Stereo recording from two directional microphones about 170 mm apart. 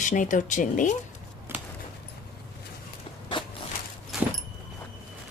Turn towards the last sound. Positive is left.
turn(degrees=0)  # may be behind; listen again after turning